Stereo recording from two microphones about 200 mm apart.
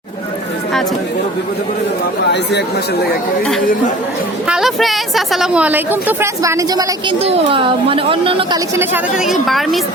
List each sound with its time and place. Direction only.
2.3 s speech: 55° left (ahead or behind)
4.4 s a woman's voice: 5° right (ahead or behind)